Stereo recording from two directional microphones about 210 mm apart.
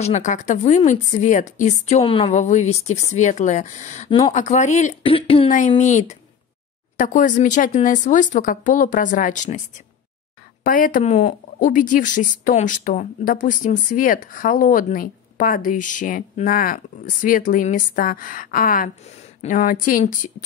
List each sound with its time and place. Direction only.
0.0 s speech: 35° left (ahead or behind)
10.6 s speech: 40° left (ahead or behind)